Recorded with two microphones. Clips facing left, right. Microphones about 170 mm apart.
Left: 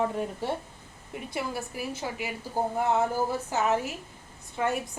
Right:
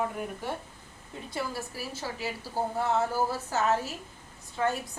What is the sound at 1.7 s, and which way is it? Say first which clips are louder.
A woman's voice: left 3 dB; 20° left (ahead or behind).